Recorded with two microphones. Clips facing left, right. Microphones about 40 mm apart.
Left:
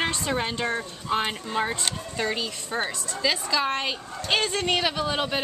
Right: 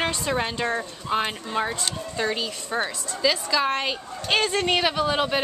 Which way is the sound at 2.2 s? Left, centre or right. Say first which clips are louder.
Right 1 dB; centre.